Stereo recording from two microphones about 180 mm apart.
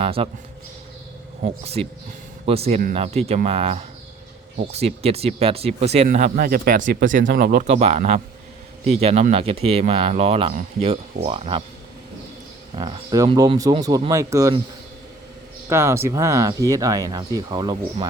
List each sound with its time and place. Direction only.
0.0 s speech: 30° right (ahead or behind)
1.4 s speech: 35° right (ahead or behind)
6.1 s speech: 50° right (ahead or behind); by 11.6 s 30° right (ahead or behind)
12.7 s speech: 25° right (ahead or behind)
15.7 s speech: 15° right (ahead or behind)